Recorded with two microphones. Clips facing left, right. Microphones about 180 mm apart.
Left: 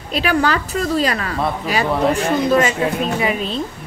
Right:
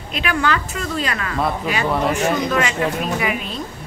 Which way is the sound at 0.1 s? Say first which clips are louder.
Left 3 dB; 35° left (ahead or behind).